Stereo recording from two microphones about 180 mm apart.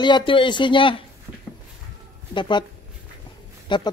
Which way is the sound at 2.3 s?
25° left (ahead or behind).